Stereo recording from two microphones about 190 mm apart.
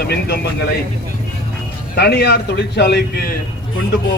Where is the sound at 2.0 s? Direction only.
60° left (ahead or behind).